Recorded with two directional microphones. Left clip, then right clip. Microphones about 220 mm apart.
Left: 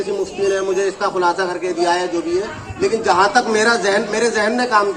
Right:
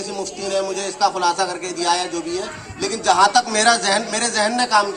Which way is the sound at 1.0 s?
35° right (ahead or behind).